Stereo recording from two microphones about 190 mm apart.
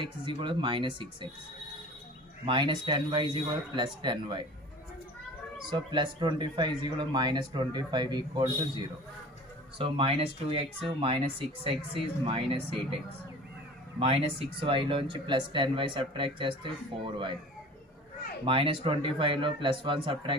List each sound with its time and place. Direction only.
0.0 s speech: 25° right (ahead or behind)
2.4 s speech: 25° right (ahead or behind)
5.7 s speech: 25° right (ahead or behind)
13.9 s speech: 30° right (ahead or behind)
18.4 s speech: 30° right (ahead or behind)